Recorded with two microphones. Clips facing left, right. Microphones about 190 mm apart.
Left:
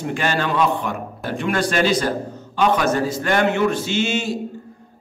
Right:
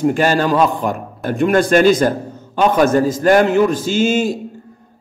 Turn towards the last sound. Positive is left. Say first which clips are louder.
# right 6 dB
turn(degrees=-45)  # may be behind; listen again after turning